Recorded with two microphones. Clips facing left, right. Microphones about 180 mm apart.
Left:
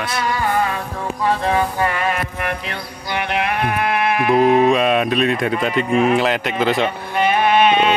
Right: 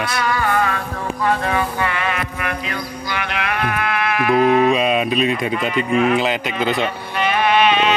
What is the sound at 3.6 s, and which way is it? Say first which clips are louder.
Sheep: left 2 dB; 25° left (ahead or behind).